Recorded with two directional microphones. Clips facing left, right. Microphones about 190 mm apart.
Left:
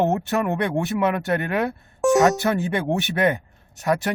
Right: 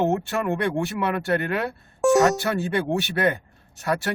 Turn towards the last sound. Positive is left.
turn(degrees=20)  # may be behind; listen again after turning